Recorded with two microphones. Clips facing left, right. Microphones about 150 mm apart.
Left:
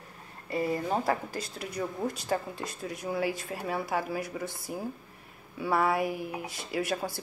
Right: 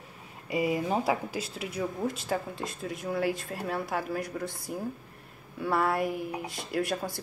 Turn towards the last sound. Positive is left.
turn(degrees=0)  # may be behind; listen again after turning